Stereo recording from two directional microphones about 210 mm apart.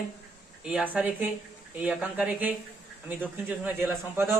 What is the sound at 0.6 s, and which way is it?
Speech, 5° right (ahead or behind).